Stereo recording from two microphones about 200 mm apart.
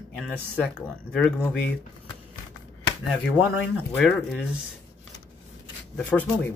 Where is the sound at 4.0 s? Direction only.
Centre (ahead or behind).